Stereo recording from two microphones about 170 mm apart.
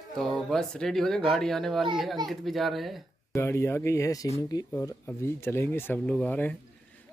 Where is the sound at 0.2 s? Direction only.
Centre (ahead or behind).